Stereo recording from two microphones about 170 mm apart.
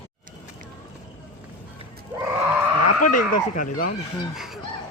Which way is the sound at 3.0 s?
50° left (ahead or behind).